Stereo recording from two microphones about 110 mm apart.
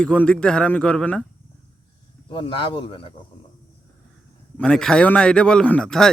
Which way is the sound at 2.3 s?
45° left (ahead or behind).